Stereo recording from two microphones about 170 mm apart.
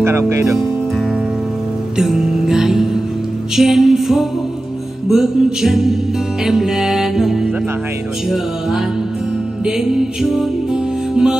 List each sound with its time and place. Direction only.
0.0 s speech: 15° right (ahead or behind)
2.0 s music: 5° right (ahead or behind)
9.7 s music: 5° right (ahead or behind)